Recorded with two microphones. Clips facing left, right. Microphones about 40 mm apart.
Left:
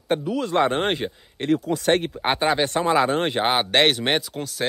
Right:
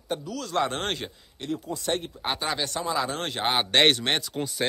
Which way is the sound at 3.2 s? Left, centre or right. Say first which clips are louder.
Left 7 dB; left.